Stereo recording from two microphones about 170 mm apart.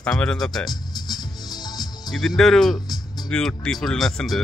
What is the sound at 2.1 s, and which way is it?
Speech, centre (ahead or behind).